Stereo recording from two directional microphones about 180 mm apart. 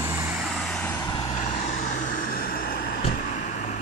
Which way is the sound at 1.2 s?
40° left (ahead or behind).